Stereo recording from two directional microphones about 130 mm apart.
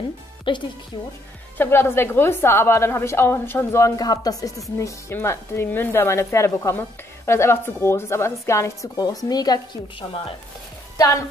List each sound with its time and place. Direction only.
0.5 s a woman's voice: 40° left (ahead or behind)
1.6 s a woman's voice: 15° left (ahead or behind)